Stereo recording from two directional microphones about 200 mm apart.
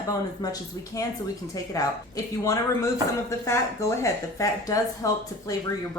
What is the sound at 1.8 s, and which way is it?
Speech, 15° left (ahead or behind).